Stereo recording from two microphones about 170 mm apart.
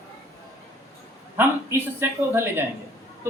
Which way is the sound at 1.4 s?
10° right (ahead or behind).